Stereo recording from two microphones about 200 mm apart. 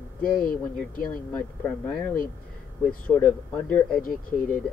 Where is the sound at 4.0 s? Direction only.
45° left (ahead or behind).